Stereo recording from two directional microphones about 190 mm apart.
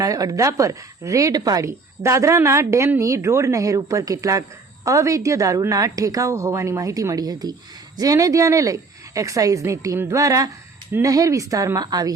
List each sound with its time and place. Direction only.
0.0 s a woman's voice: 20° right (ahead or behind)